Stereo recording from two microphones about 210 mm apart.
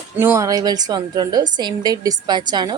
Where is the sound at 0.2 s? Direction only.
10° right (ahead or behind).